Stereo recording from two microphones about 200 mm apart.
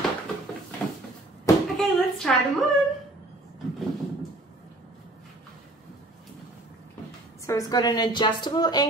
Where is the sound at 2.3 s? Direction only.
5° left (ahead or behind).